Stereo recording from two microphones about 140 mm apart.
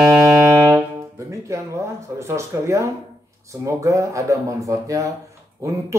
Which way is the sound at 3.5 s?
20° right (ahead or behind).